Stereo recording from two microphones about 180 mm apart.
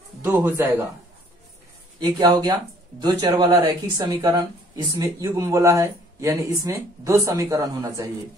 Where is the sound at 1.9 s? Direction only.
25° right (ahead or behind).